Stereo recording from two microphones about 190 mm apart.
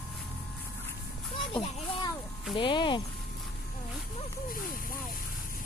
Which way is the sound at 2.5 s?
25° left (ahead or behind).